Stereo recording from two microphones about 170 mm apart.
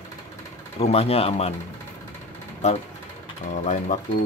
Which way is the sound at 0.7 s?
35° left (ahead or behind).